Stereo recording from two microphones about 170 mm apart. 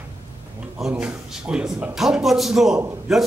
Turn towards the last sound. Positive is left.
turn(degrees=0)  # may be behind; listen again after turning